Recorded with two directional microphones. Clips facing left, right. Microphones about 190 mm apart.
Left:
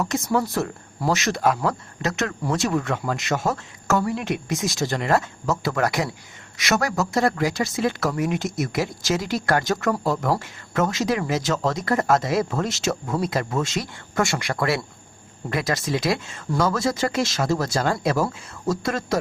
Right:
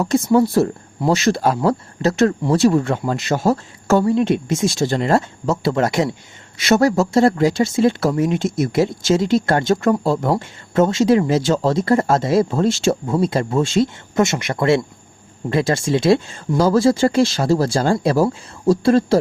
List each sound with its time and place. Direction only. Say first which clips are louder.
0.0 s speech: right 8 dB; 30° right (ahead or behind)